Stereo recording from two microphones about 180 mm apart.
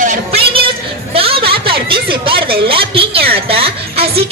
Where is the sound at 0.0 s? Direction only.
45° right (ahead or behind).